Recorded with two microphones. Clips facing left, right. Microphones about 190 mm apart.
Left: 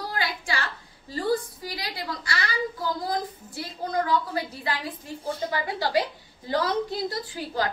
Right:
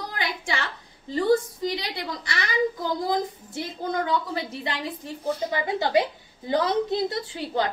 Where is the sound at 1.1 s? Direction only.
20° right (ahead or behind).